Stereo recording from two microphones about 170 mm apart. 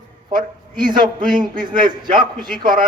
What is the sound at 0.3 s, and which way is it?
A man's voice, 25° right (ahead or behind).